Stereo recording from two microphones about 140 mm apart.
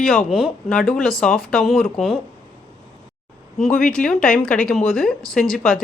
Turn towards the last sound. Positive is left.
turn(degrees=5)  # may be behind; listen again after turning